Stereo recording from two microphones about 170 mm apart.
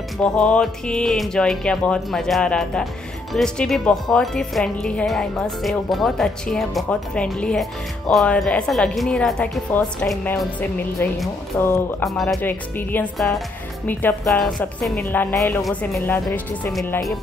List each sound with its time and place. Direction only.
0.2 s a woman's voice: 5° left (ahead or behind)
12.1 s speech: centre (ahead or behind)
12.4 s a woman's voice: 10° left (ahead or behind)